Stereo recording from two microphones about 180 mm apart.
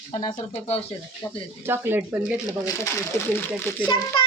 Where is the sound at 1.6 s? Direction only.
15° right (ahead or behind).